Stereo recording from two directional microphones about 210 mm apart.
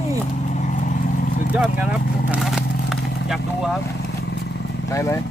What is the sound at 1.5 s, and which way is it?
Speech, 5° right (ahead or behind).